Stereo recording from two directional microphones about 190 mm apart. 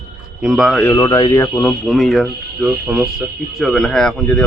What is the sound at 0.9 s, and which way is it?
Speech, 20° left (ahead or behind).